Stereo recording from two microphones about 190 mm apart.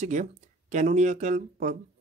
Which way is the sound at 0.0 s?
40° right (ahead or behind).